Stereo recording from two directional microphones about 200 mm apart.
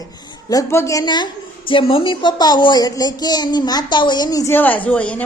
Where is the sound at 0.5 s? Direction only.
15° left (ahead or behind).